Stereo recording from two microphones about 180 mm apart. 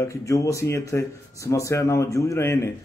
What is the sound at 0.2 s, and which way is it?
A man's voice, 15° left (ahead or behind).